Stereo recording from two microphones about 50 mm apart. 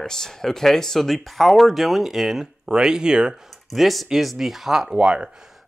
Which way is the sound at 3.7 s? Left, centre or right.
Centre.